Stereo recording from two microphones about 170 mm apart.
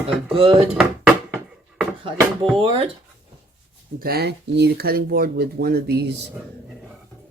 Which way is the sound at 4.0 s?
65° right (ahead or behind).